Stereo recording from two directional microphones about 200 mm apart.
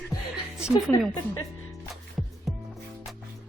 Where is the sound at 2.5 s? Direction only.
Centre (ahead or behind).